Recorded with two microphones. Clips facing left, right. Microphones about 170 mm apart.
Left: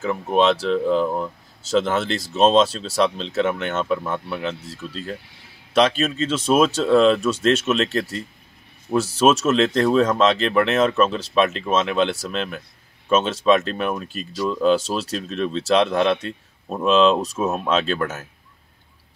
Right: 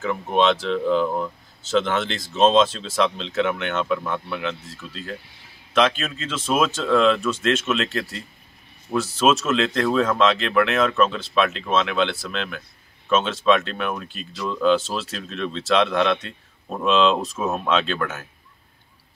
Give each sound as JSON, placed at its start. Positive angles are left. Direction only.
{"t": 0.0, "sound": "speech", "side_deg": 5}
{"t": 1.7, "sound": "speech", "side_deg": 35}
{"t": 16.6, "sound": "speech", "side_deg": 5}
{"t": 17.6, "sound": "speech", "side_deg": 40}